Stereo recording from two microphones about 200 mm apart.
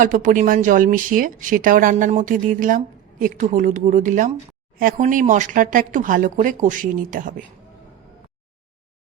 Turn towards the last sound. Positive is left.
turn(degrees=-40)  # may be behind; listen again after turning